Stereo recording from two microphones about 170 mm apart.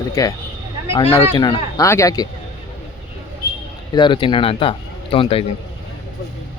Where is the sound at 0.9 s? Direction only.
30° left (ahead or behind).